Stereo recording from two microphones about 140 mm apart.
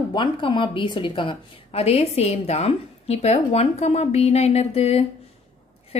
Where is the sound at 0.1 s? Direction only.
35° left (ahead or behind).